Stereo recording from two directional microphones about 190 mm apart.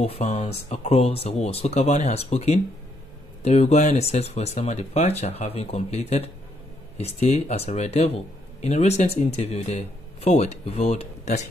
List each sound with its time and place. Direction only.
0.0 s speech: 35° left (ahead or behind)